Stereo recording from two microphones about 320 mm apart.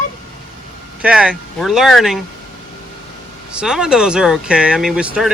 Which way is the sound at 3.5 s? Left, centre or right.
Centre.